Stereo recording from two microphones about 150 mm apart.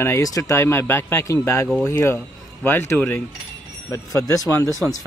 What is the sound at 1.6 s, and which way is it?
Speech, centre (ahead or behind).